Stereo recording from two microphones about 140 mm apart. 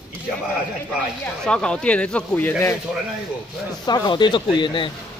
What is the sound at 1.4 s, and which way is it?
Speech, 5° left (ahead or behind).